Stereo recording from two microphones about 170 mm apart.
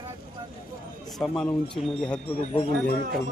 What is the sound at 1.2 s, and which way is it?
Speech, 10° left (ahead or behind).